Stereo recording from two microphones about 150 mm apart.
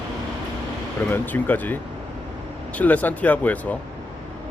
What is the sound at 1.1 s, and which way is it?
Speech, 10° left (ahead or behind).